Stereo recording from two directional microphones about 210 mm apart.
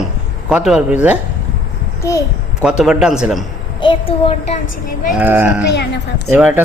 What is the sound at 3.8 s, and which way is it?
Speech, 25° left (ahead or behind).